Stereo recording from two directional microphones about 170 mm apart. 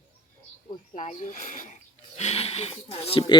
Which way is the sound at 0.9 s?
50° left (ahead or behind).